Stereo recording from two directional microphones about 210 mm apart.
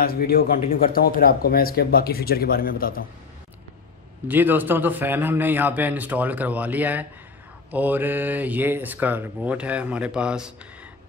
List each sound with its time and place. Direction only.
0.0 s speech: 45° left (ahead or behind)
4.3 s speech: 10° right (ahead or behind)